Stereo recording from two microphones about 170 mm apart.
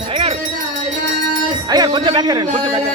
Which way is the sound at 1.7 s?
25° right (ahead or behind).